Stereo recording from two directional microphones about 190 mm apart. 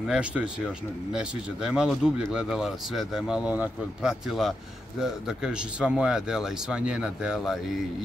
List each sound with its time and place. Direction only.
0.0 s speech: 5° right (ahead or behind)